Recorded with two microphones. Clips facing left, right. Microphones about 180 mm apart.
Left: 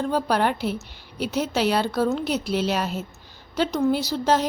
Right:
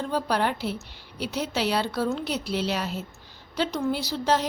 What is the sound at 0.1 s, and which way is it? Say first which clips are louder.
A woman's voice: left 1 dB; 50° left (ahead or behind).